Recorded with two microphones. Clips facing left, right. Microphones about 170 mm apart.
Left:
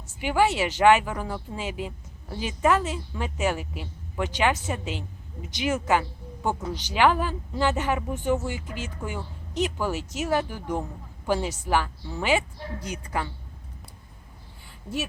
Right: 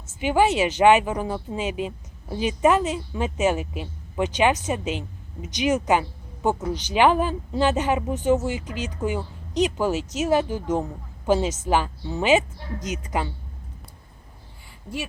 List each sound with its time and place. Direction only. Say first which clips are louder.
0.2 s a woman's voice: right 3 dB; 20° right (ahead or behind)